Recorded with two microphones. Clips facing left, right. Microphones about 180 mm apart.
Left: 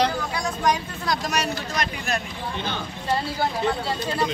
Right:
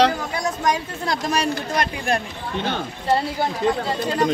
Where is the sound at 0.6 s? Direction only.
25° right (ahead or behind).